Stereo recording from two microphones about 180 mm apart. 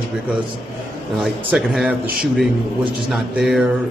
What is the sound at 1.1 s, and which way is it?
Speech, 5° right (ahead or behind).